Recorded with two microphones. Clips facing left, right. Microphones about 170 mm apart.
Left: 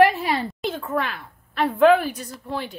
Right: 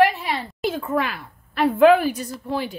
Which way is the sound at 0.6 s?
5° right (ahead or behind).